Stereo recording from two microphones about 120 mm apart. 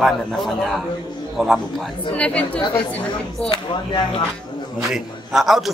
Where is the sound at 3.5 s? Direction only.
40° left (ahead or behind).